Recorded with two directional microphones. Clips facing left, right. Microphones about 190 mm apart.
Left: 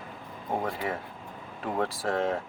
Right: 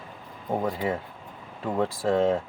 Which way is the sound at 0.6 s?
20° right (ahead or behind).